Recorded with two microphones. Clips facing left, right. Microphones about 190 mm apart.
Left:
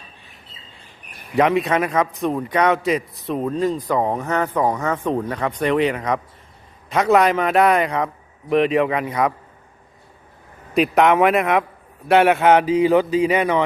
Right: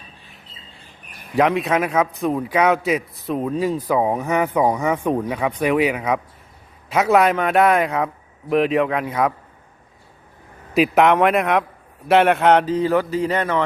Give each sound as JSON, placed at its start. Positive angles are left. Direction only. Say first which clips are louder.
{"t": 1.4, "sound": "a man's voice", "louder": "left 1 dB", "side_deg": 0}
{"t": 10.8, "sound": "a man's voice", "louder": "even", "side_deg": 0}